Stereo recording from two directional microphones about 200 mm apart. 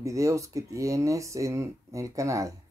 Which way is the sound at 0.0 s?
15° right (ahead or behind).